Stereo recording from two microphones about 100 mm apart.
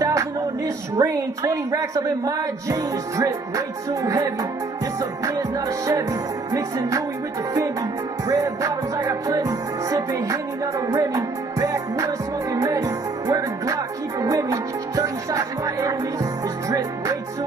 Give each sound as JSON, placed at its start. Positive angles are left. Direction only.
{"t": 0.0, "sound": "music", "side_deg": -30}
{"t": 0.9, "sound": "speech", "side_deg": -35}
{"t": 7.5, "sound": "music", "side_deg": -35}